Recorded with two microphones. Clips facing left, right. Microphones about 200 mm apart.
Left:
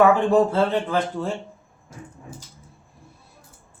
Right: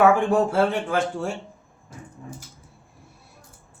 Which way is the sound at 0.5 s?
10° right (ahead or behind).